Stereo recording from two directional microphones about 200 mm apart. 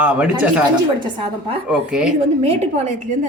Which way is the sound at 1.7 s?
5° right (ahead or behind).